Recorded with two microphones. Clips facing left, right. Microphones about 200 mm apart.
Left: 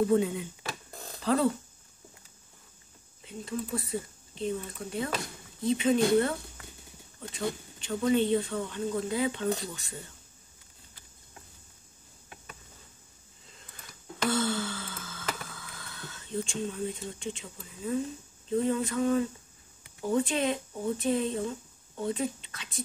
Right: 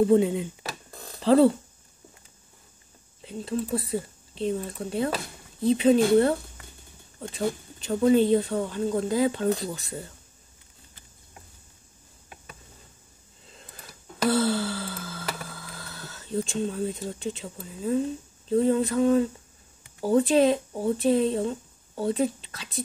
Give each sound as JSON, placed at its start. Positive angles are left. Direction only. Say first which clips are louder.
{"t": 0.1, "sound": "speech", "louder": "right 5 dB", "side_deg": -25}
{"t": 3.3, "sound": "speech", "louder": "right 6 dB", "side_deg": -35}
{"t": 7.2, "sound": "speech", "louder": "right 5 dB", "side_deg": -35}
{"t": 13.6, "sound": "a sound", "louder": "right 5 dB", "side_deg": -35}
{"t": 18.5, "sound": "speech", "louder": "right 6 dB", "side_deg": -35}